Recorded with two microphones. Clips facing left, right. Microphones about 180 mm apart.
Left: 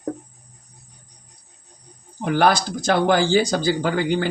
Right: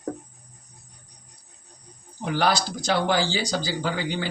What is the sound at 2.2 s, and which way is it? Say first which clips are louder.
A man's voice: left 5 dB; 50° left (ahead or behind).